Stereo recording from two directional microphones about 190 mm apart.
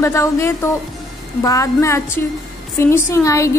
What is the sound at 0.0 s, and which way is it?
A woman's voice, 15° left (ahead or behind).